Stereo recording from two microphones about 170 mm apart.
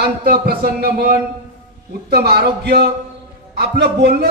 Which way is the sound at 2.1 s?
70° right (ahead or behind).